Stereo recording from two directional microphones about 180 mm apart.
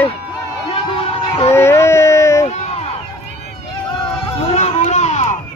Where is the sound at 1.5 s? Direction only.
15° left (ahead or behind).